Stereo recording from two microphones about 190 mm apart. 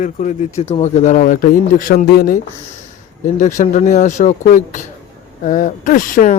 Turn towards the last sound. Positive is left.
turn(degrees=45)  # may be behind; listen again after turning